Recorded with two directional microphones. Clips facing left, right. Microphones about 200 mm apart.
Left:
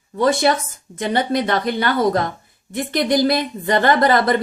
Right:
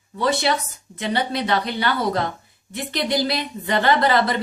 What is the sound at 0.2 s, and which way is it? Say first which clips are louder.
A woman's voice: left 5 dB; 50° left (ahead or behind).